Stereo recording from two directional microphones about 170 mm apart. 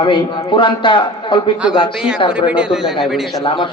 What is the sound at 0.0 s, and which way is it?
Mantra, 30° left (ahead or behind).